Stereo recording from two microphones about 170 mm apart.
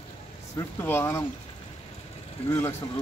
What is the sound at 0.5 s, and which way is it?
Speech, 15° left (ahead or behind).